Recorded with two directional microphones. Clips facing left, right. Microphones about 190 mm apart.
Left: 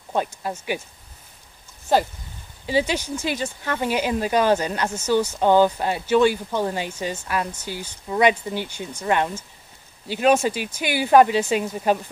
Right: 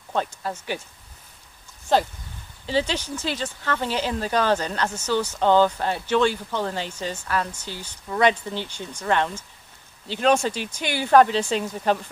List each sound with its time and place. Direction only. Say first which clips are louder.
0.1 s speech: left 2 dB; 10° left (ahead or behind)
1.9 s speech: left 1 dB; 10° left (ahead or behind)